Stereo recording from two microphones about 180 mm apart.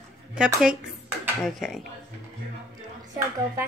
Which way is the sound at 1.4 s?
Centre (ahead or behind).